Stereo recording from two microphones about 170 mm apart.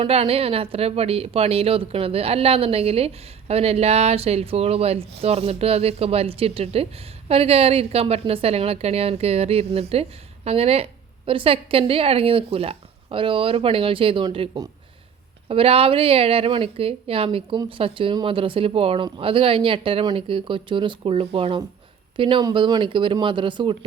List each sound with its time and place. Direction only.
0.0 s a woman's voice: 35° right (ahead or behind)